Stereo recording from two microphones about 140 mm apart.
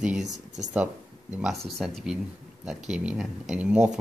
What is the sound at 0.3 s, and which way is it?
Speech, 60° right (ahead or behind).